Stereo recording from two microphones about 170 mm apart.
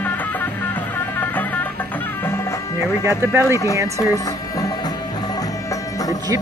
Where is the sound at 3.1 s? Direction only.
15° right (ahead or behind).